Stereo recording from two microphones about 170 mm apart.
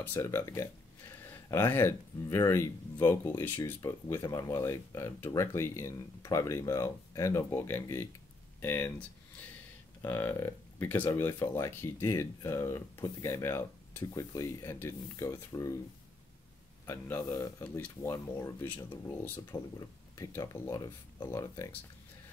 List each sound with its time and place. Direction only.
0.0 s speech: 15° left (ahead or behind)
10.0 s speech: 15° left (ahead or behind)
16.8 s speech: 15° left (ahead or behind)